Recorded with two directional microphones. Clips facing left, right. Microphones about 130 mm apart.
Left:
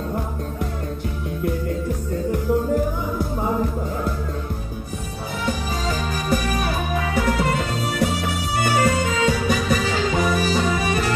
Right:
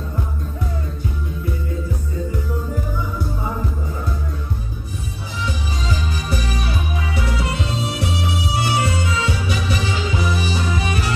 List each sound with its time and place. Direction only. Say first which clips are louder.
5.4 s music: left 2 dB; 50° left (ahead or behind)